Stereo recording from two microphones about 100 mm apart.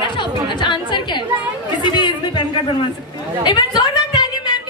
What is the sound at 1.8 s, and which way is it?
Chatter, 50° left (ahead or behind).